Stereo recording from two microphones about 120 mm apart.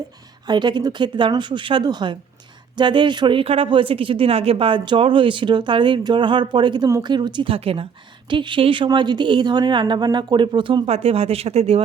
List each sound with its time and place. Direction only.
0.4 s speech: 40° right (ahead or behind)
8.3 s speech: 40° right (ahead or behind); by 11.8 s 60° right (ahead or behind)